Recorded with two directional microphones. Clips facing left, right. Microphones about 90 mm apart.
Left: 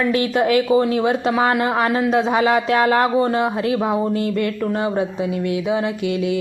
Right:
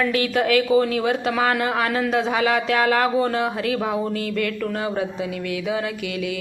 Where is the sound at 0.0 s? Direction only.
25° left (ahead or behind).